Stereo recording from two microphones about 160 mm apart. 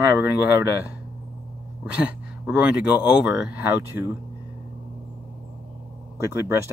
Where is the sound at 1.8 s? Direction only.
5° right (ahead or behind).